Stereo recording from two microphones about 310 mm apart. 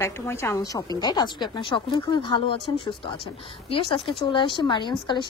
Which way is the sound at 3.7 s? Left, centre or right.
Centre.